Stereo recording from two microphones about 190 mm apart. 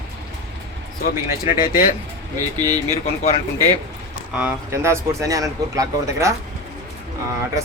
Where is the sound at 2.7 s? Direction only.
35° left (ahead or behind).